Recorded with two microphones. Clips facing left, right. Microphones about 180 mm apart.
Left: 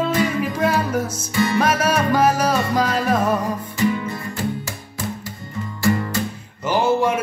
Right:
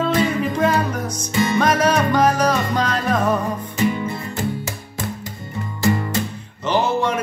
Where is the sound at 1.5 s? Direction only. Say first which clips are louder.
Right 3 dB; 5° left (ahead or behind).